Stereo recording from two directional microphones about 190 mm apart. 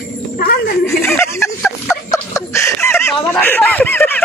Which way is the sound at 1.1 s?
15° left (ahead or behind).